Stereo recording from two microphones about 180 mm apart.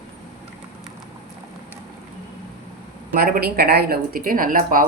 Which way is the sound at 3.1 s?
55° right (ahead or behind).